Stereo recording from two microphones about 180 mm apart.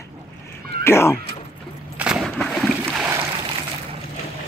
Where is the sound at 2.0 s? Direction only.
5° right (ahead or behind).